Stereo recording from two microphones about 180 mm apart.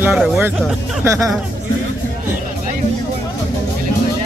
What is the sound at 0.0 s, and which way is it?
Speech, 10° right (ahead or behind).